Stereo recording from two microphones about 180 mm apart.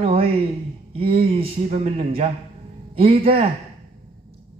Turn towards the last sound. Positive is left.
turn(degrees=-30)  # may be behind; listen again after turning